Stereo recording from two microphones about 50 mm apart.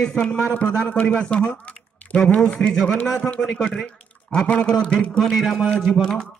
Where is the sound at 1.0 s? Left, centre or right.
Centre.